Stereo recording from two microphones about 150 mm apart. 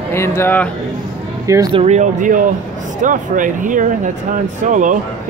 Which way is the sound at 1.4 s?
20° right (ahead or behind).